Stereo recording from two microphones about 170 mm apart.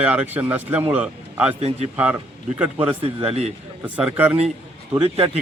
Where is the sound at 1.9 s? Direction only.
10° right (ahead or behind).